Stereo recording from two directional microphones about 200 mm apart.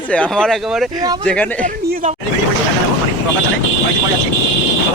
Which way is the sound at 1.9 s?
40° right (ahead or behind).